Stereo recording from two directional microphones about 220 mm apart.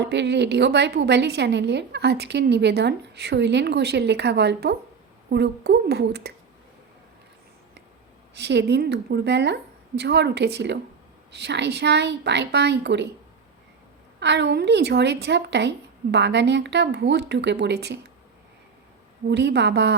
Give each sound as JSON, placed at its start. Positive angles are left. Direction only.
{"t": 0.0, "sound": "a woman's voice", "side_deg": -50}
{"t": 8.4, "sound": "a woman's voice", "side_deg": -50}
{"t": 14.2, "sound": "a woman's voice", "side_deg": -50}
{"t": 19.3, "sound": "a woman's voice", "side_deg": -50}